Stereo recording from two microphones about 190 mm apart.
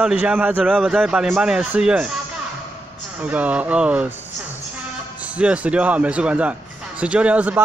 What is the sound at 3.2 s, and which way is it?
Speech, 5° right (ahead or behind).